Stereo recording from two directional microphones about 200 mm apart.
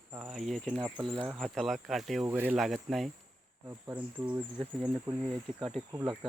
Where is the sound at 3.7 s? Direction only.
15° right (ahead or behind).